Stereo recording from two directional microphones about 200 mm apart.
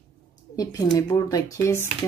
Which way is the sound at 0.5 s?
20° left (ahead or behind).